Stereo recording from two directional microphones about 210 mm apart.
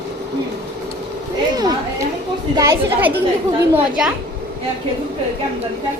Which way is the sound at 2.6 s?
15° right (ahead or behind).